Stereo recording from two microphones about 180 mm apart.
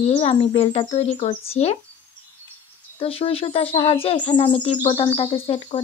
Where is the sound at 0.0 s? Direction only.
35° left (ahead or behind).